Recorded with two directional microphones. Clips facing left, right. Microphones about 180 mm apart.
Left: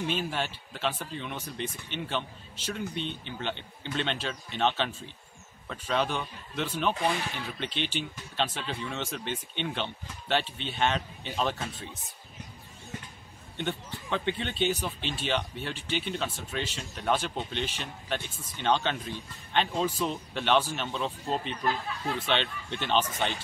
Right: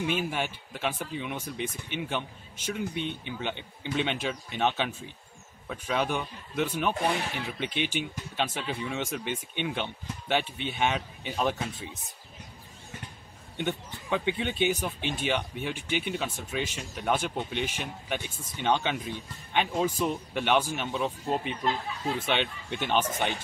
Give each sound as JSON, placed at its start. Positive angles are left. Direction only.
{"t": 0.0, "sound": "speech", "side_deg": -10}
{"t": 13.6, "sound": "speech", "side_deg": -10}